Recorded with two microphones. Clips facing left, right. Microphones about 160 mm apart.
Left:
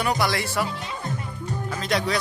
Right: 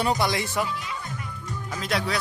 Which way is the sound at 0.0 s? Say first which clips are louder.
Even; 20° right (ahead or behind).